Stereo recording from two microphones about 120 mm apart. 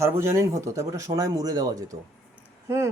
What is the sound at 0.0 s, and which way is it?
Speech, 20° right (ahead or behind).